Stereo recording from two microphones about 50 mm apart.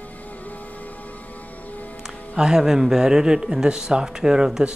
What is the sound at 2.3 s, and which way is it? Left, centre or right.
A man's voice, centre.